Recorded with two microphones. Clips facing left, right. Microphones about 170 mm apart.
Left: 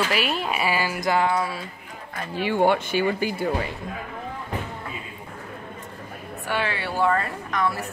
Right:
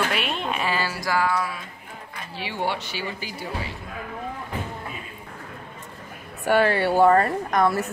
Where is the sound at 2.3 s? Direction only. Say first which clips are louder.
Left 8 dB; 50° left (ahead or behind).